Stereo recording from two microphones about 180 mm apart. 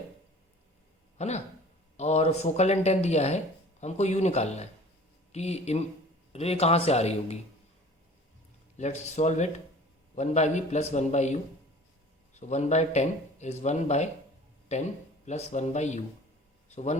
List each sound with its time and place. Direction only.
1.2 s speech: 35° left (ahead or behind)
8.8 s speech: 40° left (ahead or behind)
15.3 s a man's voice: 40° left (ahead or behind)